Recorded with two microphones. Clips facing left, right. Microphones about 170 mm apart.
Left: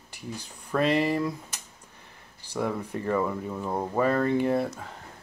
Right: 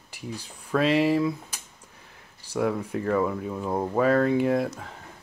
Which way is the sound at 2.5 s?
5° right (ahead or behind).